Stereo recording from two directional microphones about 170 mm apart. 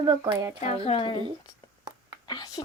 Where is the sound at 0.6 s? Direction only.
35° left (ahead or behind).